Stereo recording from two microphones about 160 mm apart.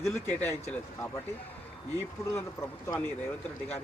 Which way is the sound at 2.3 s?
20° left (ahead or behind).